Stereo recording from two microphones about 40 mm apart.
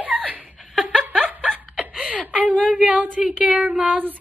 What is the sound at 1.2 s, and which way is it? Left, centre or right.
Snicker, right.